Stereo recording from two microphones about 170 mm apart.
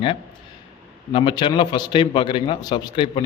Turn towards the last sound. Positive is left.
turn(degrees=30)  # may be behind; listen again after turning